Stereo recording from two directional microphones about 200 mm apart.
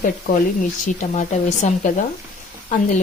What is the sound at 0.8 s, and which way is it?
Speech, 35° left (ahead or behind).